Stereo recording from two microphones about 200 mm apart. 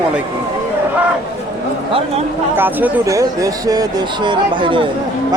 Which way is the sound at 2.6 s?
10° right (ahead or behind).